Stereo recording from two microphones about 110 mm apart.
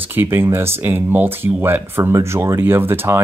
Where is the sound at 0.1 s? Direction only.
20° right (ahead or behind).